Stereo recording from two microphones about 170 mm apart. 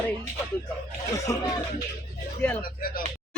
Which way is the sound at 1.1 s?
20° left (ahead or behind).